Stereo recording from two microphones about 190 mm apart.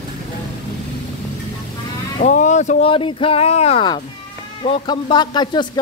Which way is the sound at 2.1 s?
40° left (ahead or behind).